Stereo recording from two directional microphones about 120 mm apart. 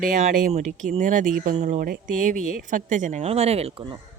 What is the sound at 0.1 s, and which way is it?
Speech, 90° right.